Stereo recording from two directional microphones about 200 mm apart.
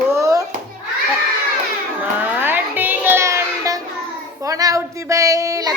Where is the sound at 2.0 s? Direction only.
10° right (ahead or behind).